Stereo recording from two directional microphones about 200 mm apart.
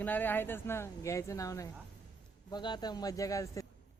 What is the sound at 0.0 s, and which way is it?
Speech, 10° left (ahead or behind).